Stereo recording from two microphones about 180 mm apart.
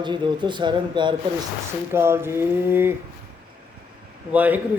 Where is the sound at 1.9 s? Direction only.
15° right (ahead or behind).